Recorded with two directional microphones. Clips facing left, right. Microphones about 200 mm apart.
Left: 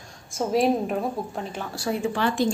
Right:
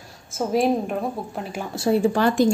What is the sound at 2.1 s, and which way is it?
Speech, 45° right (ahead or behind).